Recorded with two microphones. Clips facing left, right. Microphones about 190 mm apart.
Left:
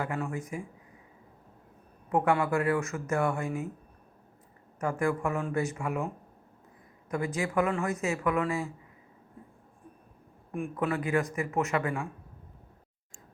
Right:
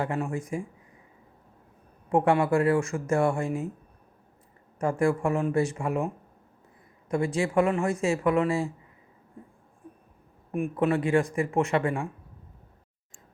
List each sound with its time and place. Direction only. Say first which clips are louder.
0.0 s speech: right 4 dB; 30° right (ahead or behind)
2.0 s speech: right 4 dB; 30° right (ahead or behind)
4.8 s speech: right 4 dB; 30° right (ahead or behind)
7.3 s speech: right 4 dB; 30° right (ahead or behind)
10.5 s speech: right 5 dB; 25° right (ahead or behind)